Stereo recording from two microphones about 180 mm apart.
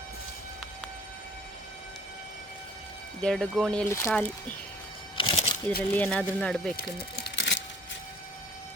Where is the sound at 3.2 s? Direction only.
Centre (ahead or behind).